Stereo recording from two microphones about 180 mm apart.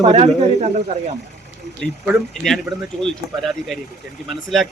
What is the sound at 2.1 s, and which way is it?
Speech, centre (ahead or behind).